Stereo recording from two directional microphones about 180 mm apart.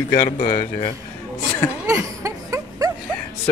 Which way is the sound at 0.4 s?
45° left (ahead or behind).